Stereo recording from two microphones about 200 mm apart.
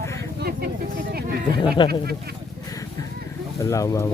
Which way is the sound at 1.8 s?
25° left (ahead or behind).